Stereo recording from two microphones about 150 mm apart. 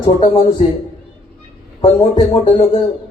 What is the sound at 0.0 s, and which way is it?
Speech, 35° left (ahead or behind).